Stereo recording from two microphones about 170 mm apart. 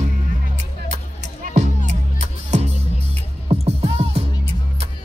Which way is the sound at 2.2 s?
40° right (ahead or behind).